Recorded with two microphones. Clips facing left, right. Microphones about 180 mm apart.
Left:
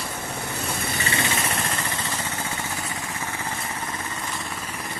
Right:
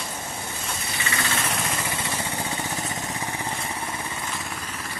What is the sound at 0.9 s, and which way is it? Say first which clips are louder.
Vehicle: left 1 dB; 35° left (ahead or behind).